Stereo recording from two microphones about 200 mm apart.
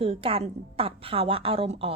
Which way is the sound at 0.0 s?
30° right (ahead or behind).